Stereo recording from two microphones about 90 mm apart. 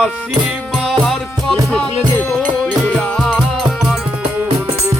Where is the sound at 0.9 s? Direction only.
Centre (ahead or behind).